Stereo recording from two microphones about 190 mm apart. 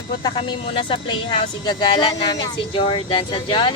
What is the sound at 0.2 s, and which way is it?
Speech, 25° left (ahead or behind).